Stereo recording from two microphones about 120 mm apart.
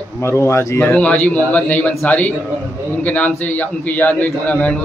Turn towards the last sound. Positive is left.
turn(degrees=10)  # may be behind; listen again after turning